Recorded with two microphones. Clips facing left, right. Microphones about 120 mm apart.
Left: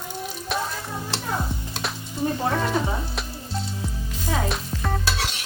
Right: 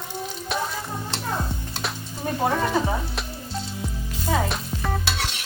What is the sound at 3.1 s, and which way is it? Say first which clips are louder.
Music: even; centre (ahead or behind).